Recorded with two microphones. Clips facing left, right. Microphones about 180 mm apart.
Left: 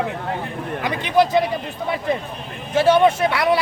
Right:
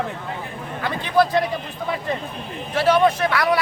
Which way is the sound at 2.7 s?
25° left (ahead or behind).